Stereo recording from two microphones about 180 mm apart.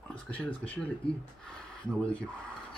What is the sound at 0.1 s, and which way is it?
Speech, 10° left (ahead or behind).